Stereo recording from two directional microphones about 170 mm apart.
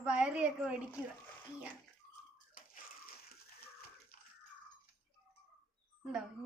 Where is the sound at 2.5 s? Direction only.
55° left (ahead or behind).